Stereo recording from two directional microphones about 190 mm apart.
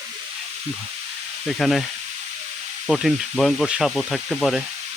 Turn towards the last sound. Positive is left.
turn(degrees=0)  # may be behind; listen again after turning